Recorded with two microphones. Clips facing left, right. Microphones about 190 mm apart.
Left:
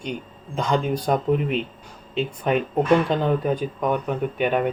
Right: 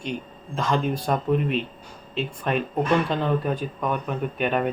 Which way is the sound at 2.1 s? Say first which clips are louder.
Left 3 dB; 20° left (ahead or behind).